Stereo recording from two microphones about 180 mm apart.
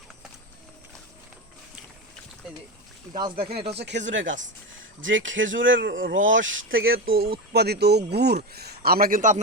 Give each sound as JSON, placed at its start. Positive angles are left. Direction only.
{"t": 3.1, "sound": "speech", "side_deg": -25}
{"t": 3.7, "sound": "a man's voice", "side_deg": -70}